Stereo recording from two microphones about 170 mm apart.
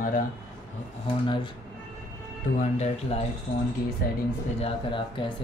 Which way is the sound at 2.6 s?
40° left (ahead or behind).